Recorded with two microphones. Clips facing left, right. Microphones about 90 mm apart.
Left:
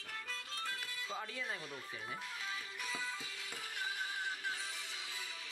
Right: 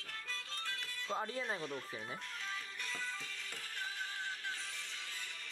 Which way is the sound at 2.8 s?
5° left (ahead or behind).